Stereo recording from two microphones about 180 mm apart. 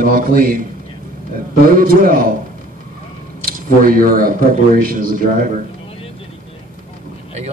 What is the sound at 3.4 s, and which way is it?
A man's voice, 55° right (ahead or behind).